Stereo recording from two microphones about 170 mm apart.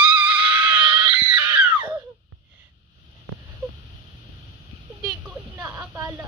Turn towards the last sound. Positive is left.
turn(degrees=-15)  # may be behind; listen again after turning